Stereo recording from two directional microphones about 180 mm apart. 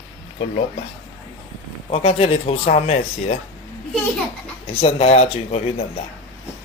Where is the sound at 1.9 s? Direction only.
35° left (ahead or behind).